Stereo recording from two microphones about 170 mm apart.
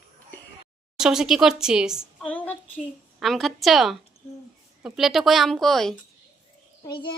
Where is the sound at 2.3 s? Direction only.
10° left (ahead or behind).